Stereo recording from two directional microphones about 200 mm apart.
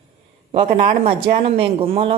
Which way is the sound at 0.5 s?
30° right (ahead or behind).